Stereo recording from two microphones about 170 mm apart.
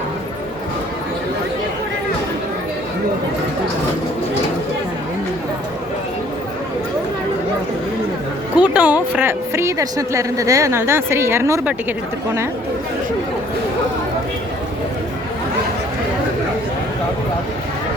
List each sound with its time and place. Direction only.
8.5 s a woman's voice: 5° right (ahead or behind)